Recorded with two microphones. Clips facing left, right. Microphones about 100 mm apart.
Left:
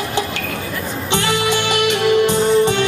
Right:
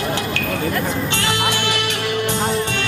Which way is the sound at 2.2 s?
20° left (ahead or behind).